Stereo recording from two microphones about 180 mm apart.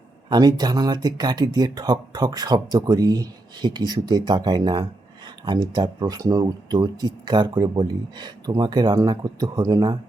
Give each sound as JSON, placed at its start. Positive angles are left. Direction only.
{"t": 0.3, "sound": "speech", "side_deg": -20}